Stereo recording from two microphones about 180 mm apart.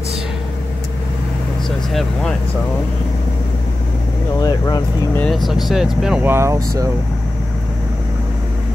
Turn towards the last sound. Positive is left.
turn(degrees=-15)  # may be behind; listen again after turning